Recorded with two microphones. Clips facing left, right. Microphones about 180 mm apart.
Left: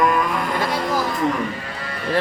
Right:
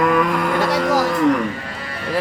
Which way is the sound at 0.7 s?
85° right.